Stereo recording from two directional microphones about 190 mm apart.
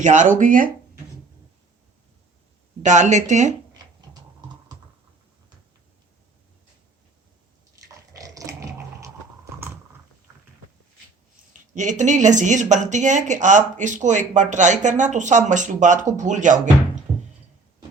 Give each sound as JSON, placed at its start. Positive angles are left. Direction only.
{"t": 0.0, "sound": "speech", "side_deg": -40}
{"t": 2.8, "sound": "speech", "side_deg": -40}
{"t": 7.8, "sound": "dog", "side_deg": -20}
{"t": 11.7, "sound": "speech", "side_deg": -40}